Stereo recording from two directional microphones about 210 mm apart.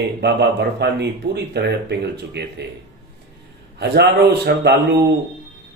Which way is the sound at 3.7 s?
55° right (ahead or behind).